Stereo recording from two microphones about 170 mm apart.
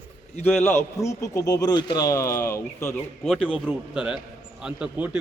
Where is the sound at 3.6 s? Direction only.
5° right (ahead or behind).